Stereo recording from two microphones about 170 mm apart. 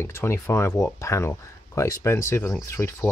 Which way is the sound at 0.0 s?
15° left (ahead or behind).